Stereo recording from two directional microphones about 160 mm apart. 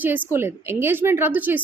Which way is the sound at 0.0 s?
15° right (ahead or behind).